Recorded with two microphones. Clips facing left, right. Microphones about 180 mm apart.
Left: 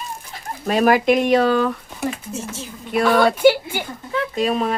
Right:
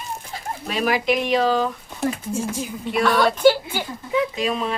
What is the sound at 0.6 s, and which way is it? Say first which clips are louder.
Speech: left 6 dB; 50° left (ahead or behind).